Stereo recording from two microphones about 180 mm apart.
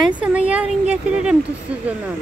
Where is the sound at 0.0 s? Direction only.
5° right (ahead or behind).